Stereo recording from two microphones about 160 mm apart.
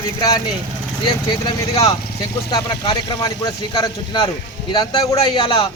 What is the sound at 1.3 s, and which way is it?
A man's voice, 25° left (ahead or behind).